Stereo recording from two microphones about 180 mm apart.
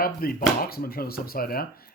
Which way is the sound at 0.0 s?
55° left (ahead or behind).